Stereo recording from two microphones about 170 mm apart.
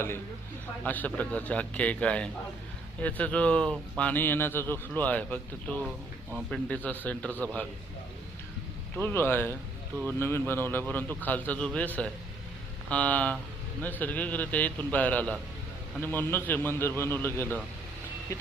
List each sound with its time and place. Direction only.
0.9 s speech: 10° left (ahead or behind)
9.0 s speech: 10° left (ahead or behind)